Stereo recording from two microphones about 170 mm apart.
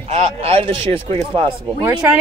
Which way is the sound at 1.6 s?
10° right (ahead or behind).